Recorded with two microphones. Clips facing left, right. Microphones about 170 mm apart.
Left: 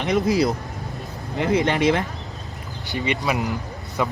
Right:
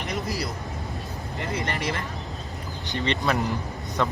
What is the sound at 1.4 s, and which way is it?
Speech, 65° left (ahead or behind).